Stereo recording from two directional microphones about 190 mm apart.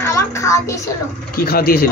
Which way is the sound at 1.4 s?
50° left (ahead or behind).